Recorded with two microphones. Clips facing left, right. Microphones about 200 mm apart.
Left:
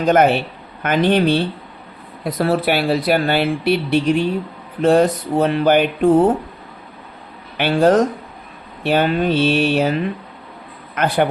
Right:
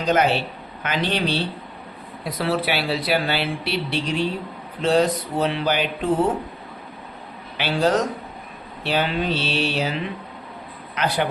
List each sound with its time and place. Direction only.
0.0 s speech: 55° left (ahead or behind)
7.5 s speech: 50° left (ahead or behind)